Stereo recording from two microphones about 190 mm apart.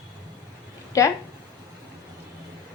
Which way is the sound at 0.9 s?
15° left (ahead or behind).